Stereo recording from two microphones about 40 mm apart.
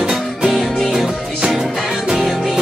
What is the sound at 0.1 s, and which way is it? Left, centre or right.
Music, centre.